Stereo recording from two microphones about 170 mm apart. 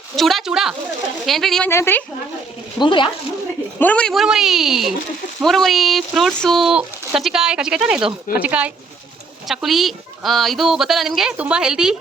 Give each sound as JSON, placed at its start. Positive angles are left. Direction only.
{"t": 0.2, "sound": "speech", "side_deg": 0}
{"t": 1.7, "sound": "speech", "side_deg": 10}
{"t": 2.7, "sound": "speech", "side_deg": 30}
{"t": 3.8, "sound": "speech", "side_deg": 10}